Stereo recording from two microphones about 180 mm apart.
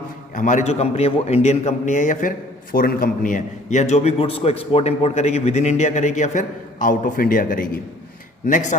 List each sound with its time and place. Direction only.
0.3 s a man's voice: 45° left (ahead or behind)